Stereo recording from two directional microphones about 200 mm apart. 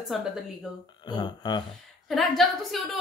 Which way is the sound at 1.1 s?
20° left (ahead or behind).